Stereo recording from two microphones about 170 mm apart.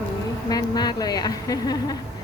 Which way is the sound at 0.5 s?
25° left (ahead or behind).